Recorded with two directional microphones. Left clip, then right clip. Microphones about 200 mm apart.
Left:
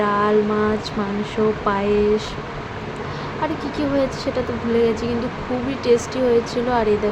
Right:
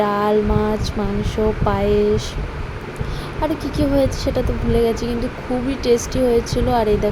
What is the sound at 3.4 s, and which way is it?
Speech, 20° right (ahead or behind).